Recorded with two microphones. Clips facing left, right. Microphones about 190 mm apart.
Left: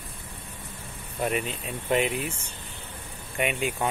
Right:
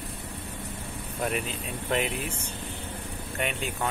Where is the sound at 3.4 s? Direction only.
10° left (ahead or behind).